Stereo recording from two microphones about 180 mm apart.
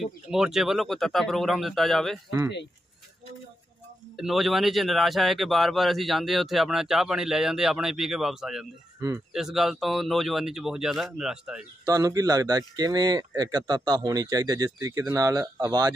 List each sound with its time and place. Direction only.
0.0 s speech: 5° right (ahead or behind)
4.2 s speech: centre (ahead or behind)
11.8 s speech: 20° right (ahead or behind)